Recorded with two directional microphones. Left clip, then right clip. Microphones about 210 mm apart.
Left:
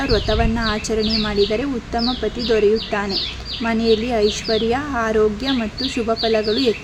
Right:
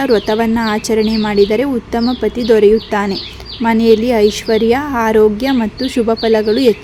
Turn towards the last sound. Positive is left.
turn(degrees=-30)  # may be behind; listen again after turning